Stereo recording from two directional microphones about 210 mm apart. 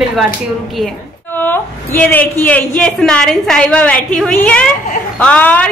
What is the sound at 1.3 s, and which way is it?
A woman's voice, 10° left (ahead or behind).